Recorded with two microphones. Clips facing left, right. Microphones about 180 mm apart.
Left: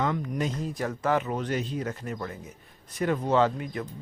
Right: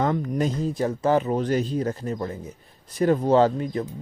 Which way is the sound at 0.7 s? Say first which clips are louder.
Right 5 dB; 25° right (ahead or behind).